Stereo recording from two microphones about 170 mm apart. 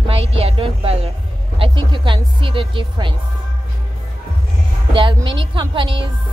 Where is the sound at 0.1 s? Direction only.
35° right (ahead or behind).